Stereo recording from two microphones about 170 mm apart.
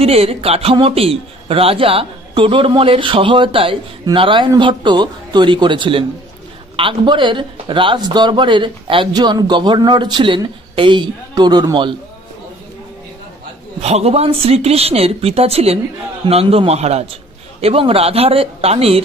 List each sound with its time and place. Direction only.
0.0 s a man's voice: 35° right (ahead or behind)
13.7 s a man's voice: 40° right (ahead or behind)